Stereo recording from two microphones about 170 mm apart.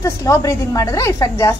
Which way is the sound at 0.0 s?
20° left (ahead or behind).